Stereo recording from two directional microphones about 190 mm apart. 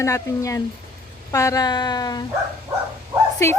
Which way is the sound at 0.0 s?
15° left (ahead or behind).